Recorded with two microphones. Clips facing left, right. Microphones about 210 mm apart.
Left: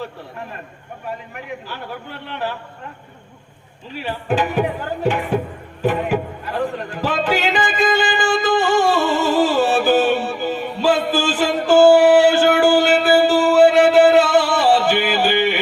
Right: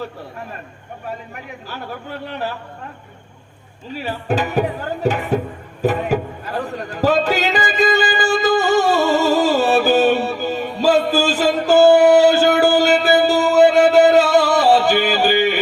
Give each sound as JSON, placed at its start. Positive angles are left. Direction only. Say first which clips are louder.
{"t": 1.3, "sound": "a man's voice", "louder": "left 2 dB", "side_deg": -40}
{"t": 3.9, "sound": "speech", "louder": "even", "side_deg": -40}
{"t": 5.8, "sound": "a sound", "louder": "right 1 dB", "side_deg": -40}